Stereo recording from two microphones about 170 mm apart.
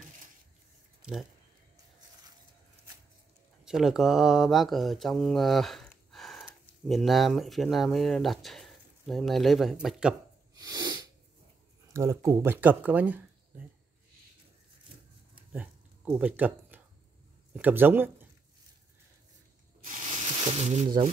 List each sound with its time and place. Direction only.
3.6 s speech: 5° right (ahead or behind)
10.5 s sneeze: 25° right (ahead or behind)
11.9 s speech: 15° right (ahead or behind)
15.5 s a sound: 10° right (ahead or behind)
17.6 s speech: 10° right (ahead or behind)
20.1 s a sound: 35° right (ahead or behind)